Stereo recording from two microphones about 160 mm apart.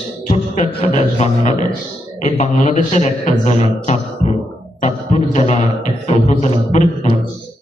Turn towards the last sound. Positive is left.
turn(degrees=45)  # may be behind; listen again after turning